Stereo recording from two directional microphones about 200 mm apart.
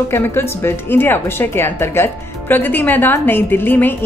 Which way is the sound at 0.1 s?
10° left (ahead or behind).